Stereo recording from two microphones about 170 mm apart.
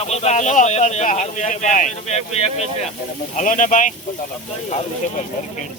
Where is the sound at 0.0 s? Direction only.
40° left (ahead or behind).